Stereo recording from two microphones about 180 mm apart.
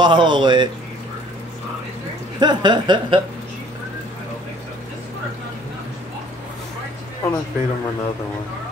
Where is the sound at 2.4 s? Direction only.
25° right (ahead or behind).